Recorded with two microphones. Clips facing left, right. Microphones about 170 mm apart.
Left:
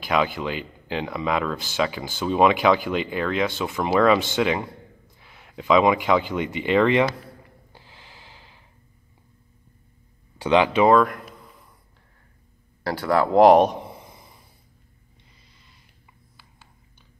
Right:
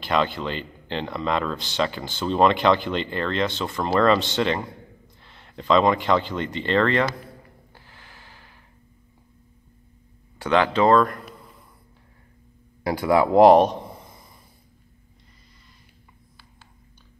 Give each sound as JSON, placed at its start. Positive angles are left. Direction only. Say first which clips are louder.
{"t": 0.0, "sound": "speech", "louder": "even", "side_deg": 5}
{"t": 7.7, "sound": "snort", "louder": "left 1 dB", "side_deg": 20}
{"t": 10.4, "sound": "speech", "louder": "left 2 dB", "side_deg": 15}
{"t": 12.8, "sound": "speech", "louder": "right 2 dB", "side_deg": -10}